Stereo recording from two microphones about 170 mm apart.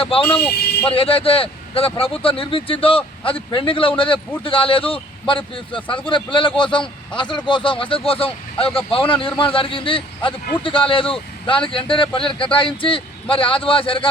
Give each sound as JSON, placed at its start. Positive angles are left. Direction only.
{"t": 0.0, "sound": "a man's voice", "side_deg": 35}
{"t": 0.3, "sound": "speech", "side_deg": 10}
{"t": 0.9, "sound": "a man's voice", "side_deg": 35}